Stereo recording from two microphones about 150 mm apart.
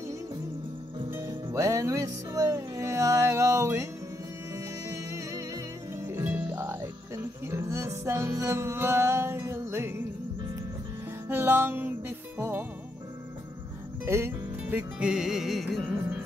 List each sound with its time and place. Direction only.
1.1 s music: 20° right (ahead or behind)
11.2 s music: 15° right (ahead or behind)
14.0 s music: 15° right (ahead or behind)